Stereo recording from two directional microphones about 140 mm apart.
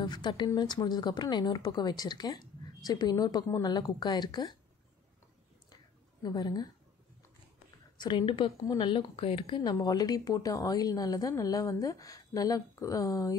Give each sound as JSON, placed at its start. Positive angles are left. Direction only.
{"t": 0.0, "sound": "speech", "side_deg": 30}
{"t": 6.2, "sound": "speech", "side_deg": 30}
{"t": 8.0, "sound": "speech", "side_deg": 30}
{"t": 9.6, "sound": "speech", "side_deg": 30}